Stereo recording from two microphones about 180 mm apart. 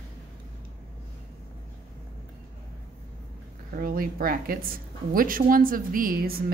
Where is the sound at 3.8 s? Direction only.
50° right (ahead or behind).